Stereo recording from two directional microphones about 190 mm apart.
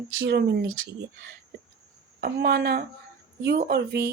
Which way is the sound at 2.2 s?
55° right (ahead or behind).